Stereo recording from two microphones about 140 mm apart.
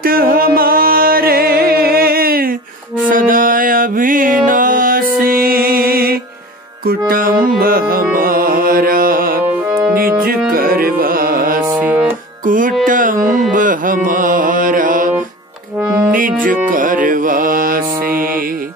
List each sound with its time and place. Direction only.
0.0 s music: 90° right
3.1 s music: 75° right (ahead or behind)
9.7 s music: 5° right (ahead or behind)
9.9 s music: 90° right
11.7 s music: 15° right (ahead or behind)
12.4 s music: 75° right (ahead or behind)
12.8 s carnatic music: 75° right (ahead or behind)
16.1 s music: 75° right (ahead or behind)